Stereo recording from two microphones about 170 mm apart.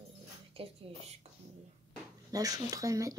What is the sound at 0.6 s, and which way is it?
Speech, 35° right (ahead or behind).